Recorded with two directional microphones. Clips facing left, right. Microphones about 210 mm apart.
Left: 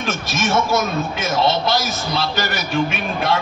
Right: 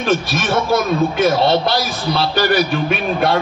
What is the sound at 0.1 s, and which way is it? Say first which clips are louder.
Speech: right 3 dB; 45° left (ahead or behind).